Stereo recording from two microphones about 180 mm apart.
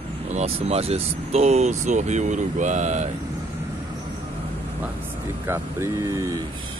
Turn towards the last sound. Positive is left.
turn(degrees=-15)  # may be behind; listen again after turning